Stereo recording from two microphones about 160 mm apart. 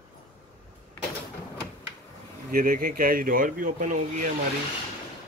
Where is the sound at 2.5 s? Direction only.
65° right (ahead or behind).